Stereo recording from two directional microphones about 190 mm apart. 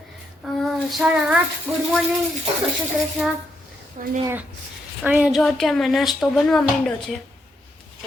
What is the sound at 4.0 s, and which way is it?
Speech, 40° right (ahead or behind).